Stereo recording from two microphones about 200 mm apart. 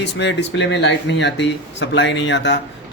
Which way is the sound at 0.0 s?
60° left (ahead or behind).